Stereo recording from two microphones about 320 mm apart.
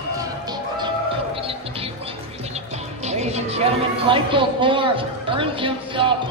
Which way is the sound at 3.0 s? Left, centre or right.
Right.